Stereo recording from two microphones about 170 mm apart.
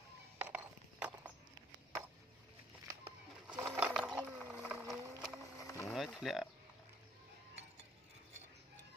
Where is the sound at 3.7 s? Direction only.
5° right (ahead or behind).